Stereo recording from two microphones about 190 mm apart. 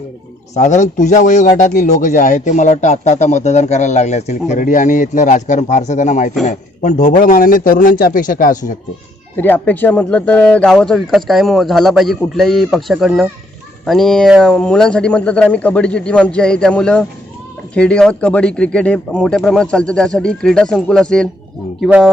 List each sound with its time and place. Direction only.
0.5 s a man's voice: 40° left (ahead or behind)
9.3 s speech: 10° left (ahead or behind)